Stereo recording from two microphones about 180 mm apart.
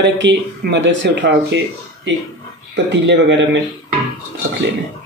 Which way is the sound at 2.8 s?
80° right.